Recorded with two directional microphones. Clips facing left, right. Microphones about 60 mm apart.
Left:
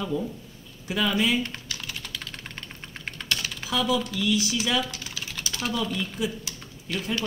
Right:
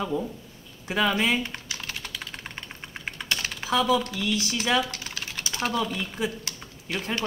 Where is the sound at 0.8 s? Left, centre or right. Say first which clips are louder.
Right 1 dB; right.